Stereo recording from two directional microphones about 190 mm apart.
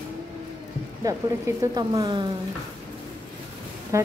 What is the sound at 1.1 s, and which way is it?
A woman's voice, 15° right (ahead or behind).